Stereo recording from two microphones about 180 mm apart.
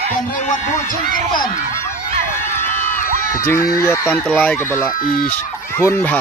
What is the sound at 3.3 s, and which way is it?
Speech, 15° left (ahead or behind).